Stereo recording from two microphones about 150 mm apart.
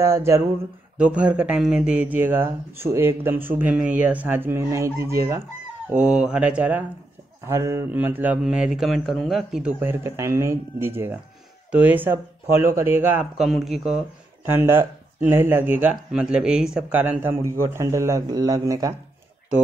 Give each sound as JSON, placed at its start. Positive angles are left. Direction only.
{"t": 0.0, "sound": "speech", "side_deg": -20}
{"t": 5.9, "sound": "speech", "side_deg": -5}
{"t": 9.8, "sound": "speech", "side_deg": -15}
{"t": 14.4, "sound": "speech", "side_deg": -15}